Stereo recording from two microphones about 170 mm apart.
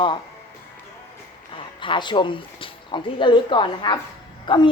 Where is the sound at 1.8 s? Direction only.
30° left (ahead or behind).